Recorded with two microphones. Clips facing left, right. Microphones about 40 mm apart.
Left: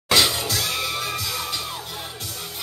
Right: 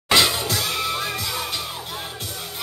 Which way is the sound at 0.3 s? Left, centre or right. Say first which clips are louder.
Right 1 dB; centre.